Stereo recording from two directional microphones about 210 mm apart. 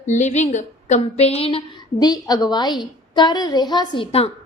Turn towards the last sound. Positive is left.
turn(degrees=25)  # may be behind; listen again after turning